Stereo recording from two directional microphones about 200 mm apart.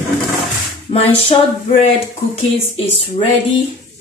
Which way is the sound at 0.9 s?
30° left (ahead or behind).